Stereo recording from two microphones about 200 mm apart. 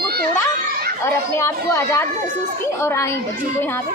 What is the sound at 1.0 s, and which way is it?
A woman's voice, 15° left (ahead or behind).